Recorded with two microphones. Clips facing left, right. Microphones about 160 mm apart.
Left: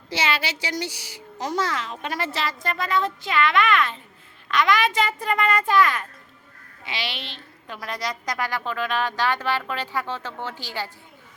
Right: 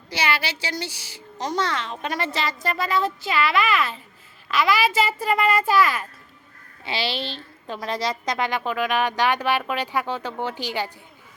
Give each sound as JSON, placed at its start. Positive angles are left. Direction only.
{"t": 0.1, "sound": "a woman's voice", "side_deg": 20}
{"t": 1.4, "sound": "speech", "side_deg": 5}
{"t": 6.8, "sound": "a woman's voice", "side_deg": -30}